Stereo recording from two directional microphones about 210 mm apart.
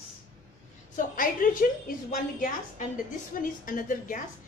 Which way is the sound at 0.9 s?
40° left (ahead or behind).